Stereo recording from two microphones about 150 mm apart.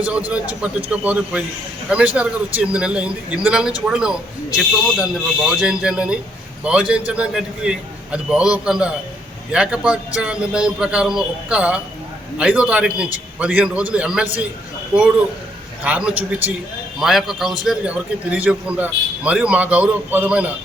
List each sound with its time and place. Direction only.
0.3 s a man's voice: 10° right (ahead or behind)
15.8 s a man's voice: 10° right (ahead or behind)